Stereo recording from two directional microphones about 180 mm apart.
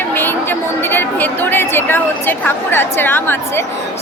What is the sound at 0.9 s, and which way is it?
Speech, 10° left (ahead or behind).